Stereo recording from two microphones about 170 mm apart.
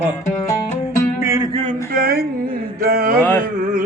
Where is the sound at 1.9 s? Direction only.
65° right (ahead or behind).